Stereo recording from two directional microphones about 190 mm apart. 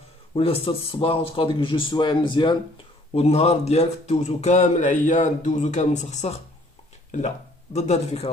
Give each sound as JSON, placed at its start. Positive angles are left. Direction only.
{"t": 0.3, "sound": "speech", "side_deg": 30}
{"t": 3.2, "sound": "a man's voice", "side_deg": 35}